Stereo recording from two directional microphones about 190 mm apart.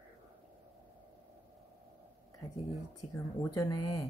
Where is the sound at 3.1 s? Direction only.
20° left (ahead or behind).